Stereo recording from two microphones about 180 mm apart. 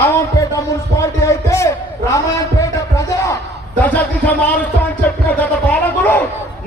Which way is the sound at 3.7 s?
10° left (ahead or behind).